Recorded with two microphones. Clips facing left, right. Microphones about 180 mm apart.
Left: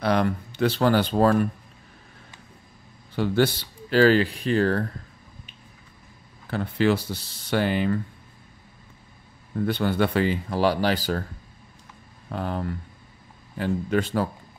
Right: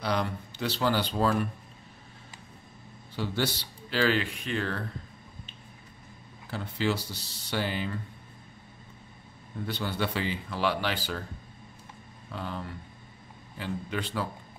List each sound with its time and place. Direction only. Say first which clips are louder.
0.0 s speech: left 7 dB; 55° left (ahead or behind)
3.2 s speech: left 9 dB; 55° left (ahead or behind); by 4.8 s 40° left (ahead or behind)
6.5 s speech: left 8 dB; 60° left (ahead or behind)
9.7 s speech: left 8 dB; 50° left (ahead or behind)
12.3 s speech: left 8 dB; 50° left (ahead or behind)